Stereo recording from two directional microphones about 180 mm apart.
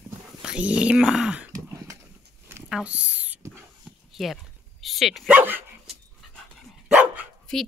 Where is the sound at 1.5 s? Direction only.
20° right (ahead or behind).